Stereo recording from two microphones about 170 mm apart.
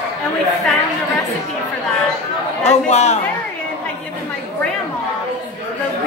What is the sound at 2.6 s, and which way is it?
Speech, 40° left (ahead or behind).